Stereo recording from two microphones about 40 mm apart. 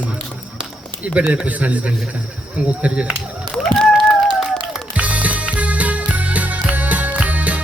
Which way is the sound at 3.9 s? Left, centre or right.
Centre.